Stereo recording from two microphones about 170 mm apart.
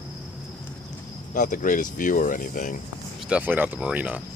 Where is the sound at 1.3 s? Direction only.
50° left (ahead or behind).